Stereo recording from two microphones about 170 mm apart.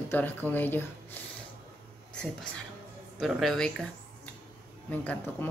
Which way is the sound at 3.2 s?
Centre (ahead or behind).